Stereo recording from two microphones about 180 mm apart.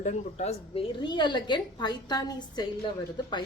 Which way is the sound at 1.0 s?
25° left (ahead or behind).